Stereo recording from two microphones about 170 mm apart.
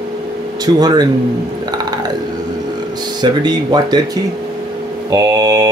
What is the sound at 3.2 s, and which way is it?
Speech, 25° right (ahead or behind).